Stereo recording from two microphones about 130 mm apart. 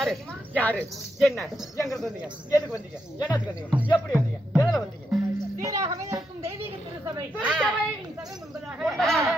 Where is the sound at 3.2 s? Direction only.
10° right (ahead or behind).